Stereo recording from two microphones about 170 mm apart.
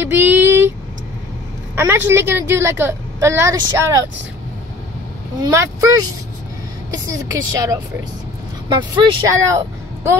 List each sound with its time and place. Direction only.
0.0 s a sound: 10° right (ahead or behind)
1.8 s a woman's voice: 15° right (ahead or behind)
5.4 s speech: 20° right (ahead or behind)
7.5 s speech: 20° right (ahead or behind)